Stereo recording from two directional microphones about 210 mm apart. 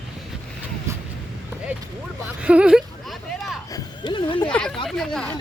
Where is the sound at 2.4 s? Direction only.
5° right (ahead or behind).